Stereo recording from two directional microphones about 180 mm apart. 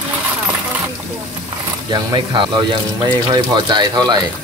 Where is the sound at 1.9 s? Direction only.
25° right (ahead or behind).